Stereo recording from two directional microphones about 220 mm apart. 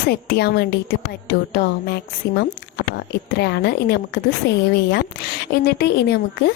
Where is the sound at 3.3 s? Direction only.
50° left (ahead or behind).